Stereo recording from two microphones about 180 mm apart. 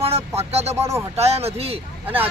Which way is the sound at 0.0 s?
35° right (ahead or behind).